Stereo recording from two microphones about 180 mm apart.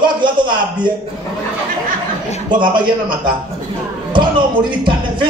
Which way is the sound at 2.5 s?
25° right (ahead or behind).